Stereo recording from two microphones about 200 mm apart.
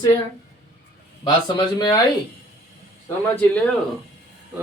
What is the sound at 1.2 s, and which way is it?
Speech, 25° left (ahead or behind).